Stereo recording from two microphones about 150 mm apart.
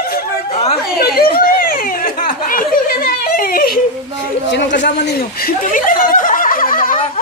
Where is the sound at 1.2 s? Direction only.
80° left.